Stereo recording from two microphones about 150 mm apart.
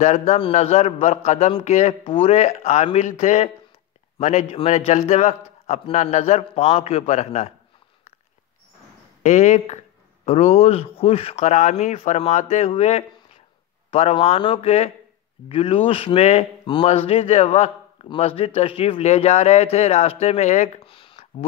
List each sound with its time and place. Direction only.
0.0 s a man's voice: 50° left (ahead or behind)
9.2 s a man's voice: 50° left (ahead or behind)
20.9 s a sound: 40° left (ahead or behind)